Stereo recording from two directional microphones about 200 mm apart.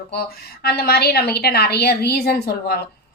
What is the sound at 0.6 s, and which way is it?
A woman's voice, 50° left (ahead or behind).